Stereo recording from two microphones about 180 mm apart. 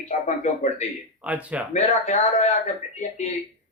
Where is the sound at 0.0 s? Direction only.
40° left (ahead or behind).